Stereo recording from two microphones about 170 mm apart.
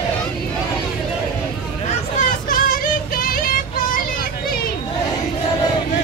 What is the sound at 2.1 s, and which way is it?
Child singing, 55° left (ahead or behind).